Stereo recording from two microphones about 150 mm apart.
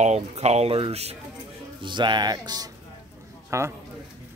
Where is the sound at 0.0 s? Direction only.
45° right (ahead or behind).